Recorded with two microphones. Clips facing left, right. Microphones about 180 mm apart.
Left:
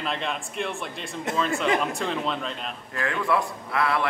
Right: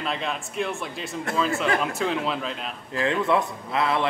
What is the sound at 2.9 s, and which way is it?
A man's voice, 25° right (ahead or behind).